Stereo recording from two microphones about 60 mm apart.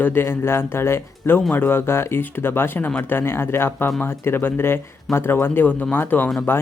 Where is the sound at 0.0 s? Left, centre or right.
Left.